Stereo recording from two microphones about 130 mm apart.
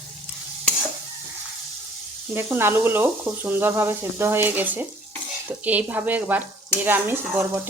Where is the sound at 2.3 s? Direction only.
15° right (ahead or behind).